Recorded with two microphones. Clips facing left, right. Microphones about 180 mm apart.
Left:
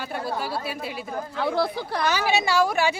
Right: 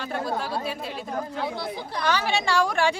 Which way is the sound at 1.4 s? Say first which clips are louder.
Left 5 dB; 75° left (ahead or behind).